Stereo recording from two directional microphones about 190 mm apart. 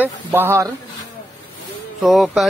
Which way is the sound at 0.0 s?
10° right (ahead or behind).